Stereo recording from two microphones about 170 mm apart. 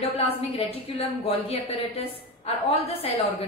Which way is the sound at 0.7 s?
35° left (ahead or behind).